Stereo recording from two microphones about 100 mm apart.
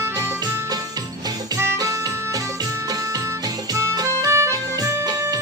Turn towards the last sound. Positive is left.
turn(degrees=-30)  # may be behind; listen again after turning